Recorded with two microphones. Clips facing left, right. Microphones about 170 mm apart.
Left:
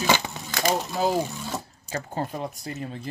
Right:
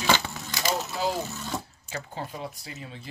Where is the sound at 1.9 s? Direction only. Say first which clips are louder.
Left 6 dB; 45° left (ahead or behind).